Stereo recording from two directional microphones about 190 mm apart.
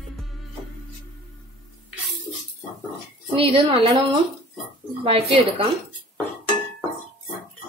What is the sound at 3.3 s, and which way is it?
Speech, 30° right (ahead or behind).